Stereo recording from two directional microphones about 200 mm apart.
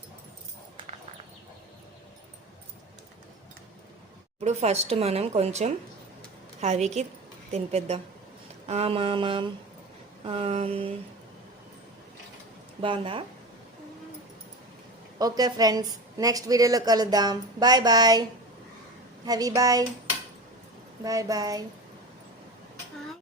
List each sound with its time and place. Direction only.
4.4 s a woman's voice: 30° right (ahead or behind)
12.8 s a woman's voice: 25° right (ahead or behind)
15.2 s a woman's voice: 20° right (ahead or behind)
21.0 s speech: 15° right (ahead or behind)